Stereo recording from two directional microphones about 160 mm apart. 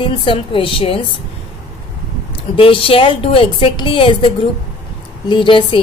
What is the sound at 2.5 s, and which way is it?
A woman's voice, 35° left (ahead or behind).